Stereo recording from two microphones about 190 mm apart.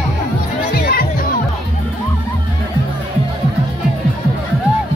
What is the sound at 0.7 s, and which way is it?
Music, 50° left (ahead or behind).